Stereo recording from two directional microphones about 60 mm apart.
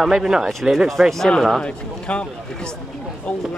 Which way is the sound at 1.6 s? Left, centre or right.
Centre.